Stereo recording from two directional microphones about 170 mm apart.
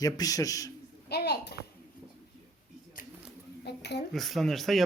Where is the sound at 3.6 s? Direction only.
80° left.